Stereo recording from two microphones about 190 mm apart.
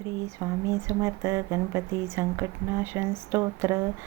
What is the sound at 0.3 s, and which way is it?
Speech, 15° right (ahead or behind).